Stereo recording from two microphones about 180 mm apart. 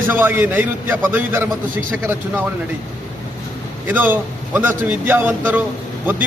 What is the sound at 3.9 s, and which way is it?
A man's voice, 10° right (ahead or behind).